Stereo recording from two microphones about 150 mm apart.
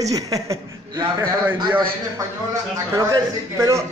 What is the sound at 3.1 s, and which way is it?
Speech, 20° right (ahead or behind).